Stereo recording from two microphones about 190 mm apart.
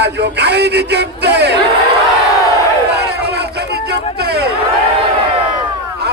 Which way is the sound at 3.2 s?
60° right (ahead or behind).